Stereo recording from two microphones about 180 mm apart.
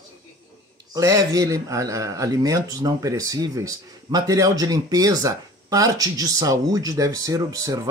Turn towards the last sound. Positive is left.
turn(degrees=-20)  # may be behind; listen again after turning